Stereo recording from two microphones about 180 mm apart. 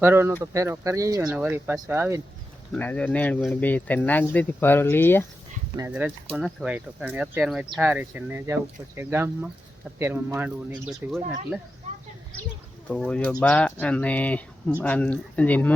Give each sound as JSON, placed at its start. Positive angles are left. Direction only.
{"t": 0.0, "sound": "speech", "side_deg": -10}
{"t": 2.7, "sound": "speech", "side_deg": 10}
{"t": 5.7, "sound": "speech", "side_deg": -15}
{"t": 12.9, "sound": "speech", "side_deg": 5}